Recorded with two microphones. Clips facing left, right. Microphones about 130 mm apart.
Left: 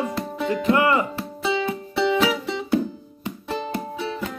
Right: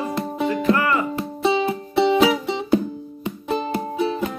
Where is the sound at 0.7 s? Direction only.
20° left (ahead or behind).